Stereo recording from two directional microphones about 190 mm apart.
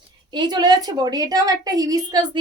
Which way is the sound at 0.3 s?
20° right (ahead or behind).